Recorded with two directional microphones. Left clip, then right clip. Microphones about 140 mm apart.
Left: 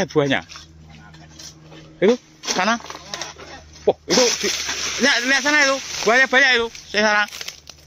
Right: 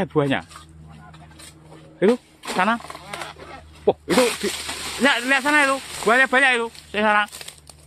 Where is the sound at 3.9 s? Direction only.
20° right (ahead or behind).